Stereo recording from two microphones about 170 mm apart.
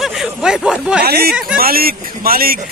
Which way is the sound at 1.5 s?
60° right (ahead or behind).